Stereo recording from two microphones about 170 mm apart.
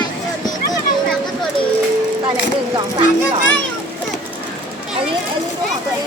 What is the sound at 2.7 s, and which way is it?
Speech, 30° right (ahead or behind).